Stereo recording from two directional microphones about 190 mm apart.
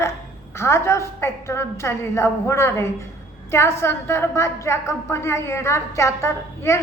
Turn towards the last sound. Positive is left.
turn(degrees=15)  # may be behind; listen again after turning